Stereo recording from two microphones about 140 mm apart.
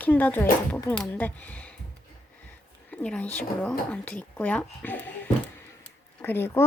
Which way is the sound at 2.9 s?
10° left (ahead or behind).